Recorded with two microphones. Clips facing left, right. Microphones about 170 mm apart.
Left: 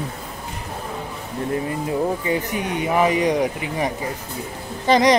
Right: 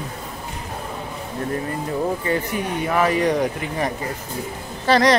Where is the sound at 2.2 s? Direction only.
15° left (ahead or behind).